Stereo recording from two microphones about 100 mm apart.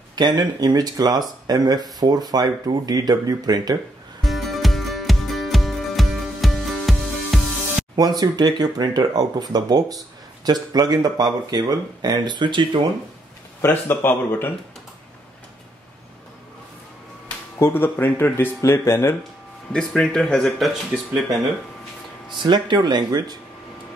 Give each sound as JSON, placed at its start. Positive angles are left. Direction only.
{"t": 0.1, "sound": "speech", "side_deg": -45}
{"t": 4.2, "sound": "music", "side_deg": 0}
{"t": 7.9, "sound": "speech", "side_deg": -45}
{"t": 13.6, "sound": "speech", "side_deg": 25}
{"t": 17.6, "sound": "speech", "side_deg": 20}
{"t": 19.7, "sound": "speech", "side_deg": 5}
{"t": 22.4, "sound": "speech", "side_deg": -50}